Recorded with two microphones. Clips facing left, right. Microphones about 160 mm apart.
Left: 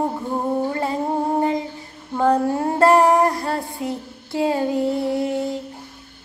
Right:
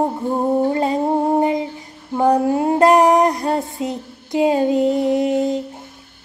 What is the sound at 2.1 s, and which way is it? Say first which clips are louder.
Female singing: right 3 dB; 15° right (ahead or behind).